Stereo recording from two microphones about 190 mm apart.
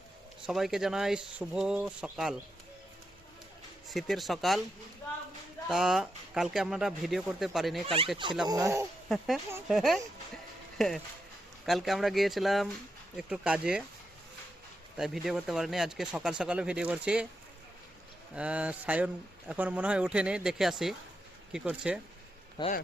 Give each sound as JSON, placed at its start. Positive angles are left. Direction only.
{"t": 0.4, "sound": "speech", "side_deg": 0}
{"t": 3.8, "sound": "speech", "side_deg": 0}
{"t": 5.6, "sound": "speech", "side_deg": -5}
{"t": 8.4, "sound": "speech", "side_deg": -15}
{"t": 9.0, "sound": "speech", "side_deg": 0}
{"t": 14.9, "sound": "speech", "side_deg": 0}
{"t": 18.3, "sound": "speech", "side_deg": -5}
{"t": 22.6, "sound": "speech", "side_deg": 20}